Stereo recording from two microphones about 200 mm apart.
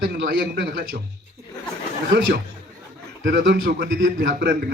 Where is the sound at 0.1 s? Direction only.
55° right (ahead or behind).